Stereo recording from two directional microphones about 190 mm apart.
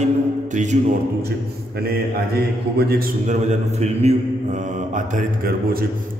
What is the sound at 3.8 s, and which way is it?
Mantra, 35° right (ahead or behind).